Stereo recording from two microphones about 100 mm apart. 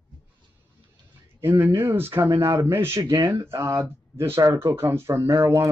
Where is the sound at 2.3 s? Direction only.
30° right (ahead or behind).